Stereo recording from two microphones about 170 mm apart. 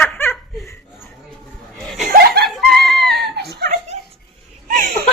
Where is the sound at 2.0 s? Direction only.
55° right (ahead or behind).